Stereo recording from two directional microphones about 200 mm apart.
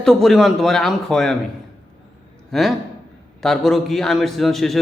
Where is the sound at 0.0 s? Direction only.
Centre (ahead or behind).